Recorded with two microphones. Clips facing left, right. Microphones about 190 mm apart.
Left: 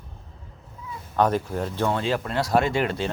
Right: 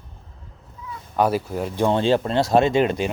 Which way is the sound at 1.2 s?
10° right (ahead or behind).